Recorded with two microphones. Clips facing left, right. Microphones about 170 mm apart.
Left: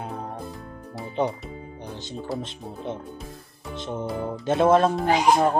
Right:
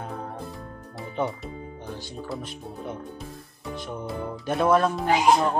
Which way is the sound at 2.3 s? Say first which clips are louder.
Left 2 dB; 25° left (ahead or behind).